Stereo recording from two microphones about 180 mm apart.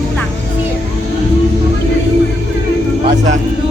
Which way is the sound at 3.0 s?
45° right (ahead or behind).